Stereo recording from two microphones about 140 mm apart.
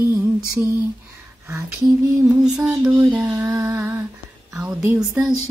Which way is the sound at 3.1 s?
10° right (ahead or behind).